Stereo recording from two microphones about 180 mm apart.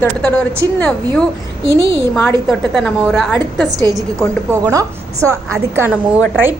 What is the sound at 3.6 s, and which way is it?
A woman's voice, 20° right (ahead or behind).